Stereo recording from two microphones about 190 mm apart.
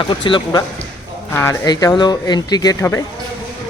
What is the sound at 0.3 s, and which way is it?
Speech, 25° left (ahead or behind).